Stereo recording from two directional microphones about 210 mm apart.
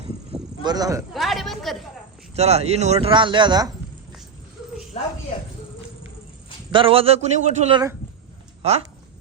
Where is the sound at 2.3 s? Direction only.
30° right (ahead or behind).